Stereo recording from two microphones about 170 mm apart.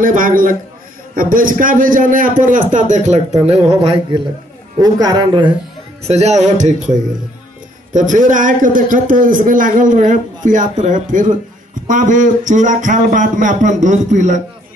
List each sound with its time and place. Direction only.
0.0 s a man's voice: 50° right (ahead or behind)
4.7 s a man's voice: 20° right (ahead or behind)
6.0 s a man's voice: 40° right (ahead or behind)